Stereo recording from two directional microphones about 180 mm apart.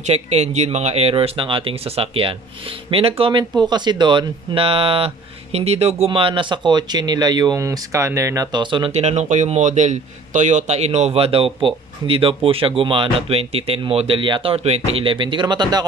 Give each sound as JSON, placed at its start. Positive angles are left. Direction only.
{"t": 0.0, "sound": "speech", "side_deg": -35}